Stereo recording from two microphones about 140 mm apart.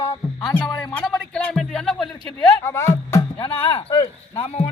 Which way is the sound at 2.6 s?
20° left (ahead or behind).